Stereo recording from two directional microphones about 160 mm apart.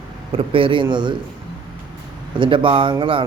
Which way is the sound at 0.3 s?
35° right (ahead or behind).